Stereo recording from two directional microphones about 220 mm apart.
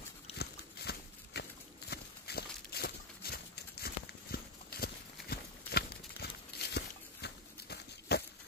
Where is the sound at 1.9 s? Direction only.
45° left (ahead or behind).